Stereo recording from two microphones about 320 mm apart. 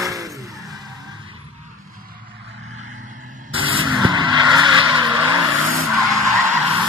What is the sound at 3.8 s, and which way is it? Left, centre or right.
Vehicle, centre.